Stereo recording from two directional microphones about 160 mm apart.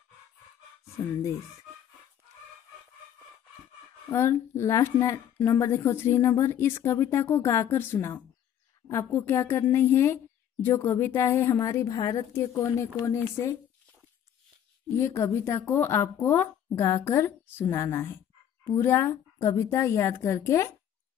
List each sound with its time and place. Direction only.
4.1 s speech: 15° left (ahead or behind)
15.0 s speech: 15° left (ahead or behind)